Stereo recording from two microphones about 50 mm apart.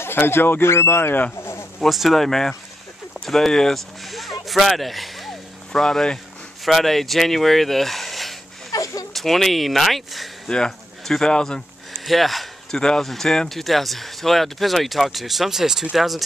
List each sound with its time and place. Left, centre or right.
0.0 s speech: left
1.4 s a sound: left
1.8 s speech: centre
4.1 s a sound: centre
5.7 s speech: centre
6.6 s speech: centre
10.5 s speech: centre
12.1 s speech: centre
12.7 s speech: centre